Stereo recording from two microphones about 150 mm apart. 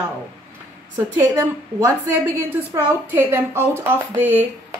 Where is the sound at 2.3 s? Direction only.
15° right (ahead or behind).